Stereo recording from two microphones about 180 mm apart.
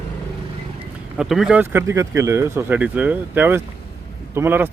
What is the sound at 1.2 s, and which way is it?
Speech, 5° right (ahead or behind).